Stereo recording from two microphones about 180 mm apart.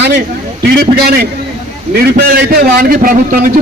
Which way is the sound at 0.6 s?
60° right (ahead or behind).